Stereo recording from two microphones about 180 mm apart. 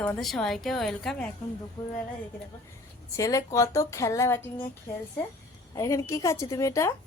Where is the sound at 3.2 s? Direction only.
20° left (ahead or behind).